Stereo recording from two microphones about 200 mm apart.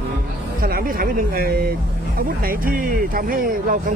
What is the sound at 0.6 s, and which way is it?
Speech, 45° right (ahead or behind).